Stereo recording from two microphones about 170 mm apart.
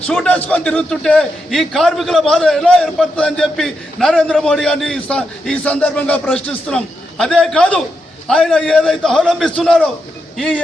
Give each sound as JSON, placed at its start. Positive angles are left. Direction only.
{"t": 0.1, "sound": "a man's voice", "side_deg": 5}